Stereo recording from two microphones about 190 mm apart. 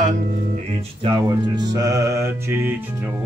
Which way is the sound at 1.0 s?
20° right (ahead or behind).